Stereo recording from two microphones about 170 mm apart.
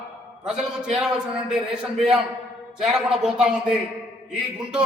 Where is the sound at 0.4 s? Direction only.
5° right (ahead or behind).